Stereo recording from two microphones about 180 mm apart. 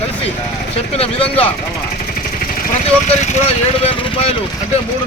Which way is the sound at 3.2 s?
30° left (ahead or behind).